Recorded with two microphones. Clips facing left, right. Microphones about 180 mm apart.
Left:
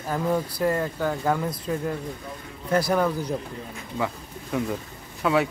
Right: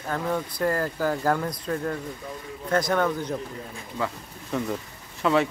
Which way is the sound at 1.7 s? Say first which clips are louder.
Even; 15° left (ahead or behind).